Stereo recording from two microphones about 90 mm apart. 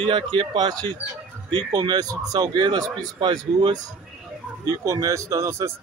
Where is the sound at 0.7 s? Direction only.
55° right (ahead or behind).